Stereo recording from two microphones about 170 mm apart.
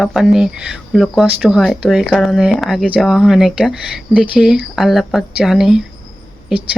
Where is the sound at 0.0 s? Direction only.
Centre (ahead or behind).